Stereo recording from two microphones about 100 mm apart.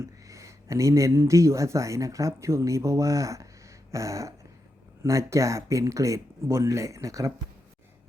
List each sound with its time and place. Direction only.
0.0 s speech: 30° right (ahead or behind)